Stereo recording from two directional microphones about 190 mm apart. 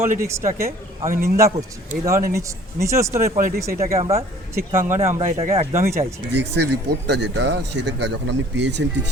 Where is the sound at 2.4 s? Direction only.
15° right (ahead or behind).